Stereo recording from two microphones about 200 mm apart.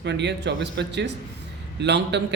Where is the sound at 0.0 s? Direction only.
60° right (ahead or behind).